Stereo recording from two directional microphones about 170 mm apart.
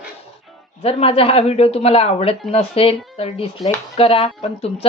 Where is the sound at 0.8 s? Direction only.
35° left (ahead or behind).